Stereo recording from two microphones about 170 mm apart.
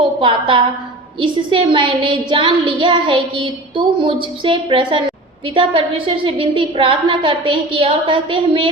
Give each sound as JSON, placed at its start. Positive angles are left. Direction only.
{"t": 0.2, "sound": "a woman's voice", "side_deg": -30}